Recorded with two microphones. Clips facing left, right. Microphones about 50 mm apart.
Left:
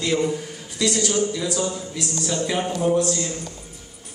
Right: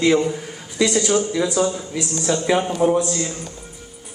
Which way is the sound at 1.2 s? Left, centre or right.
Right.